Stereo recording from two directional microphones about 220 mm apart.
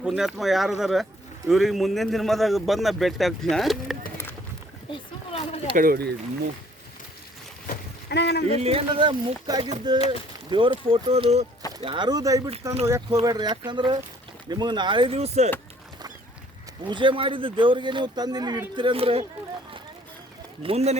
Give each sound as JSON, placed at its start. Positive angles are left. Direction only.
{"t": 0.0, "sound": "a man's voice", "side_deg": -5}
{"t": 5.7, "sound": "speech", "side_deg": -40}
{"t": 7.7, "sound": "vehicle", "side_deg": 50}
{"t": 8.4, "sound": "speech", "side_deg": -25}
{"t": 16.8, "sound": "speech", "side_deg": -20}
{"t": 20.6, "sound": "speech", "side_deg": -25}